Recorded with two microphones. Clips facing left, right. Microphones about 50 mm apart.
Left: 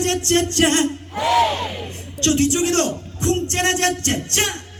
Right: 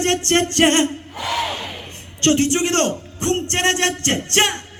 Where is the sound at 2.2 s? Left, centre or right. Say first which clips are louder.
Right 1 dB; right.